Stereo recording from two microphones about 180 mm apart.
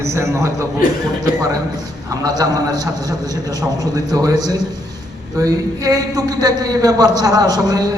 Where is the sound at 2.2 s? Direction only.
20° right (ahead or behind).